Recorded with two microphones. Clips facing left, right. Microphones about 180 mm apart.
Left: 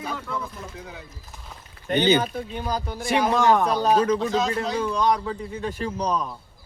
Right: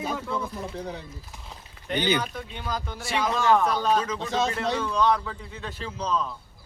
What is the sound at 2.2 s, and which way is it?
Speech, 40° left (ahead or behind).